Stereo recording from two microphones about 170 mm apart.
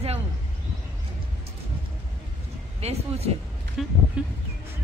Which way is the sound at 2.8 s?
40° right (ahead or behind).